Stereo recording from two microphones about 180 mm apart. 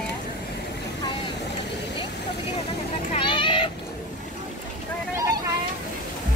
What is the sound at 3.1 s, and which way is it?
Vehicle, 25° left (ahead or behind).